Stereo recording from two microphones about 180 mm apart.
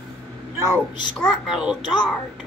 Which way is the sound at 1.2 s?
Centre (ahead or behind).